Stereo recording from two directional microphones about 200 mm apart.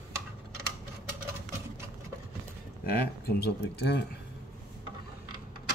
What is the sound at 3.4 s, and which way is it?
Speech, 55° left (ahead or behind).